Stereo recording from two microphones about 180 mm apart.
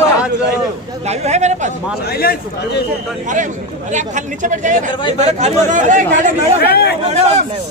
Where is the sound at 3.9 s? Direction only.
45° right (ahead or behind).